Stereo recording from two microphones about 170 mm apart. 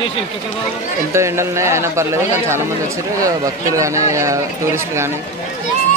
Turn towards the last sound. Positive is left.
turn(degrees=-15)  # may be behind; listen again after turning